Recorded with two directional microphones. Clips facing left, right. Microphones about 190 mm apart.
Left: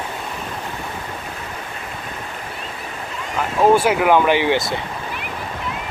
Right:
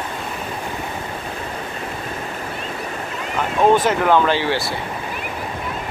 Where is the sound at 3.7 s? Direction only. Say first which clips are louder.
Left 1 dB; 10° left (ahead or behind).